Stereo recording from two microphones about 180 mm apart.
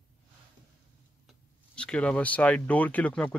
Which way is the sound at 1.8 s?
5° left (ahead or behind).